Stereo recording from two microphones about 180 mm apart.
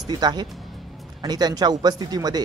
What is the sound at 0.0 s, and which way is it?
Speech, 20° right (ahead or behind).